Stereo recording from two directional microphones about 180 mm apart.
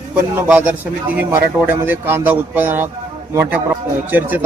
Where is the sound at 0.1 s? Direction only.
10° right (ahead or behind).